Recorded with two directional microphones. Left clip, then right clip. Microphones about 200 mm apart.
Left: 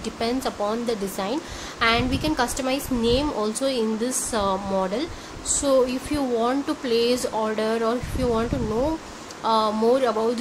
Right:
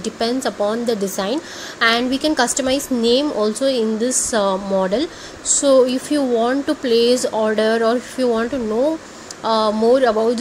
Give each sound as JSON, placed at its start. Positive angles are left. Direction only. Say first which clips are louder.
{"t": 0.0, "sound": "a woman's voice", "louder": "right 5 dB", "side_deg": -15}